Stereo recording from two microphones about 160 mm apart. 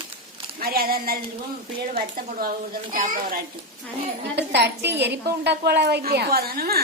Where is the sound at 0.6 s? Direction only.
70° right (ahead or behind).